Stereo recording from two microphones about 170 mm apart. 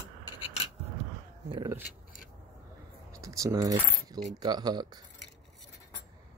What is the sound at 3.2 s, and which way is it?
Keys jangling, 20° right (ahead or behind).